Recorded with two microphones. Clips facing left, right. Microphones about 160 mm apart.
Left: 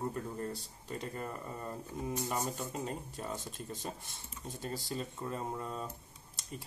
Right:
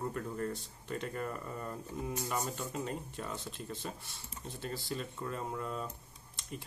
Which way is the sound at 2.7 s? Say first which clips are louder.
Right 1 dB; 35° left (ahead or behind).